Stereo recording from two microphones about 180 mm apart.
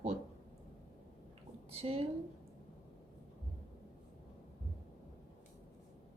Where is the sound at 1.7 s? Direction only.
35° right (ahead or behind).